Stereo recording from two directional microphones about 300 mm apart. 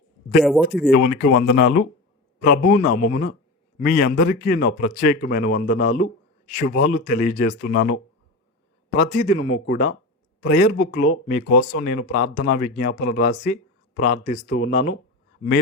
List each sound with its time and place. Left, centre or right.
0.9 s speech: left
9.0 s speech: left